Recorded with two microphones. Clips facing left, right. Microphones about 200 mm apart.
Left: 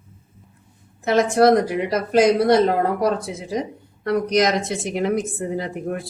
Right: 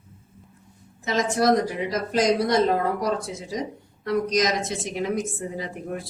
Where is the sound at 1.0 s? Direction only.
60° left (ahead or behind).